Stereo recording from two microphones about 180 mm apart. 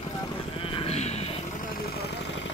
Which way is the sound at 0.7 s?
35° left (ahead or behind).